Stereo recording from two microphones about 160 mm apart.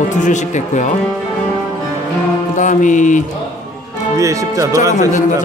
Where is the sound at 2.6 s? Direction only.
50° left (ahead or behind).